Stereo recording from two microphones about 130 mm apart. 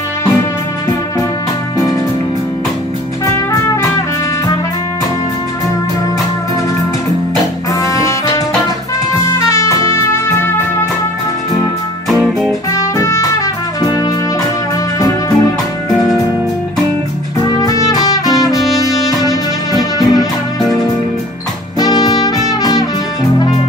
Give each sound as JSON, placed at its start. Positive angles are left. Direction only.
{"t": 7.8, "sound": "music", "side_deg": 25}
{"t": 9.5, "sound": "music", "side_deg": 20}
{"t": 12.7, "sound": "music", "side_deg": 25}
{"t": 15.0, "sound": "music", "side_deg": 25}
{"t": 17.6, "sound": "music", "side_deg": 25}
{"t": 21.7, "sound": "music", "side_deg": 30}